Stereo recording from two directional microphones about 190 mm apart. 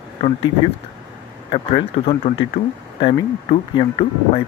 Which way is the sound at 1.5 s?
30° left (ahead or behind).